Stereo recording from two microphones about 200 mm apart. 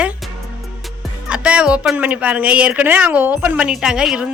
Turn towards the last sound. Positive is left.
turn(degrees=-5)  # may be behind; listen again after turning